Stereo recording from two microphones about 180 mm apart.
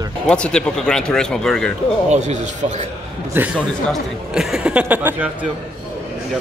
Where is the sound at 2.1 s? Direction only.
40° right (ahead or behind).